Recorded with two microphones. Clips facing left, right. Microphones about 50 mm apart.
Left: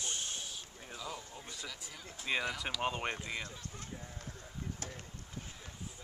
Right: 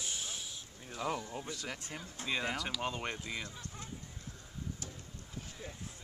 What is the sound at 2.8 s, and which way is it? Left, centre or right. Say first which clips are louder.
Speech: left 2 dB; centre.